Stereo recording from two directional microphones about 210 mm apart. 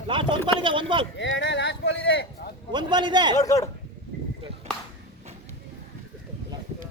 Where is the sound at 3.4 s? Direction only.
15° left (ahead or behind).